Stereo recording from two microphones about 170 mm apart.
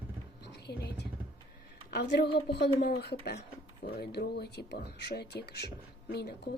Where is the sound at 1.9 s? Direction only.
75° left (ahead or behind).